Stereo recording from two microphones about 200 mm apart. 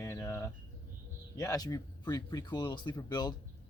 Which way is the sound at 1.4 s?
15° left (ahead or behind).